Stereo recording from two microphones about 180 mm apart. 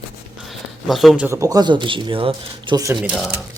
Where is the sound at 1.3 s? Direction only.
20° right (ahead or behind).